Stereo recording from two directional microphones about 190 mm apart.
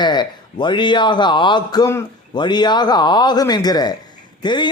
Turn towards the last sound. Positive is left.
turn(degrees=25)  # may be behind; listen again after turning